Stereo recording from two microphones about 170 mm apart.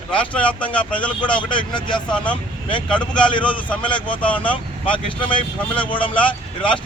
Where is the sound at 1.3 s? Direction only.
25° left (ahead or behind).